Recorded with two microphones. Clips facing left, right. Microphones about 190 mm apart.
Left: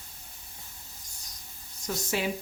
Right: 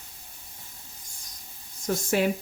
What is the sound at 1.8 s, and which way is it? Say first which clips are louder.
Speech: right 6 dB; 50° right (ahead or behind).